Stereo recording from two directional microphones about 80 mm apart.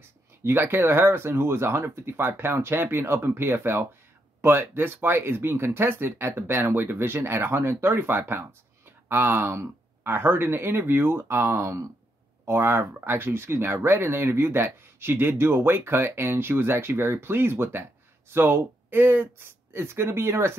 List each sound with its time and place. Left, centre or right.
0.4 s speech: right
12.4 s speech: right